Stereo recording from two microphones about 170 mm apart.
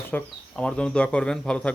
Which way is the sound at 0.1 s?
10° left (ahead or behind).